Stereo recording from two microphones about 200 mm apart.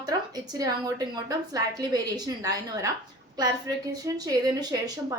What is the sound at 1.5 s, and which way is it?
A woman's voice, 20° right (ahead or behind).